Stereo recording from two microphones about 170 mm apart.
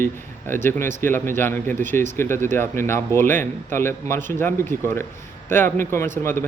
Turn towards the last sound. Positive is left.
turn(degrees=15)  # may be behind; listen again after turning